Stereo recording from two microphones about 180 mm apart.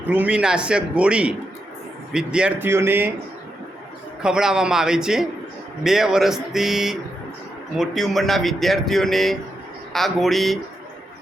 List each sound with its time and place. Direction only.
0.0 s speech: 10° right (ahead or behind)
4.2 s speech: 5° right (ahead or behind)